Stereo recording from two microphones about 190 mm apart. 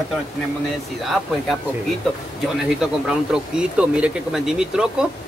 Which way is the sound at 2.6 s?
5° right (ahead or behind).